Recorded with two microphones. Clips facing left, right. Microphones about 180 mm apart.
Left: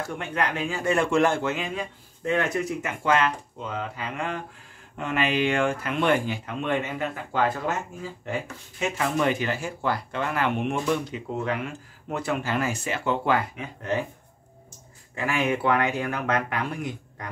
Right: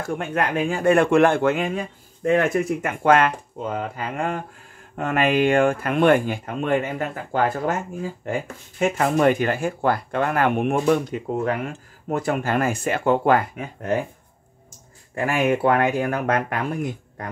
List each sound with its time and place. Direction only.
0.0 s speech: 50° right (ahead or behind)
15.1 s speech: 45° right (ahead or behind)